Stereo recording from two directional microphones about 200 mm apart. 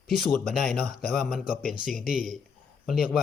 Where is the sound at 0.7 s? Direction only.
50° left (ahead or behind).